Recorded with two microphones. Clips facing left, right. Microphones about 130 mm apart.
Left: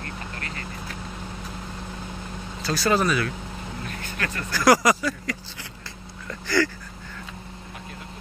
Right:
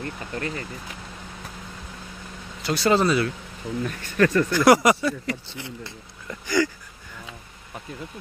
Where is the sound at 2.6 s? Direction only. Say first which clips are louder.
Right 2 dB; 25° right (ahead or behind).